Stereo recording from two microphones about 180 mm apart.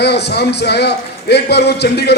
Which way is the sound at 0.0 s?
65° left (ahead or behind).